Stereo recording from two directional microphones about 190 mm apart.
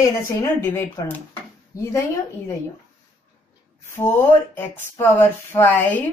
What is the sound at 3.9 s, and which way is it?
Speech, 10° left (ahead or behind).